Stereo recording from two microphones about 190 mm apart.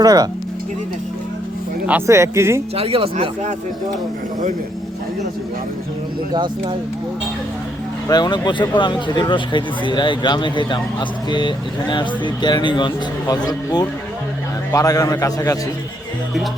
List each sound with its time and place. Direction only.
0.0 s speech: 20° right (ahead or behind)
1.9 s speech: 15° right (ahead or behind)
2.7 s speech: 30° right (ahead or behind)
8.0 s a man's voice: 20° left (ahead or behind)